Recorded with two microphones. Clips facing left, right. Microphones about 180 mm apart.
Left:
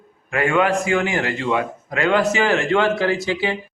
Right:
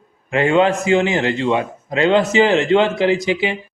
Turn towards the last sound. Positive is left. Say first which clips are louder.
# right 4 dB
turn(degrees=-15)  # may be behind; listen again after turning